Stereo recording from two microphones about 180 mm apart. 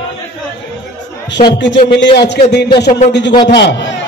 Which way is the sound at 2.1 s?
65° left (ahead or behind).